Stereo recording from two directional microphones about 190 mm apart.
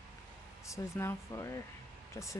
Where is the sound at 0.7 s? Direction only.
15° left (ahead or behind).